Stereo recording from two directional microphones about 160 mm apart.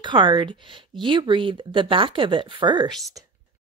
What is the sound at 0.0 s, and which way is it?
Speech, 30° right (ahead or behind).